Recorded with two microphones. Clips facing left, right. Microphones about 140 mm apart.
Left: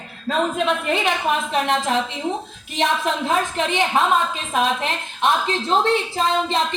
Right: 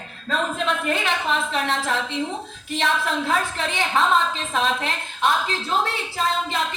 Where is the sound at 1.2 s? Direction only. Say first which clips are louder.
Left 3 dB; 15° left (ahead or behind).